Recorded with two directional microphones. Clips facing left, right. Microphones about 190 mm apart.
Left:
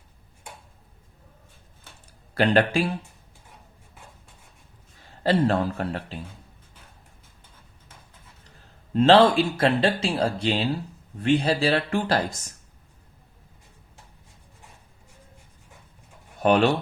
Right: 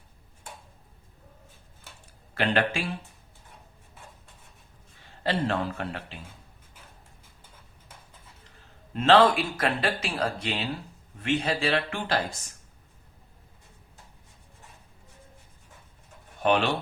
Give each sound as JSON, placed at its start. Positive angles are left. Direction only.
{"t": 2.3, "sound": "speech", "side_deg": 40}
{"t": 5.2, "sound": "speech", "side_deg": 40}
{"t": 8.4, "sound": "speech", "side_deg": 35}
{"t": 16.4, "sound": "speech", "side_deg": 40}